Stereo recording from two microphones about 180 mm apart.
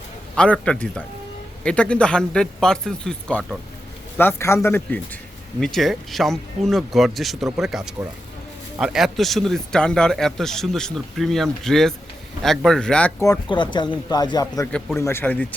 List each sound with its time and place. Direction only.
0.3 s a man's voice: 5° left (ahead or behind)
13.5 s speech: 25° left (ahead or behind); by 15.4 s 10° left (ahead or behind)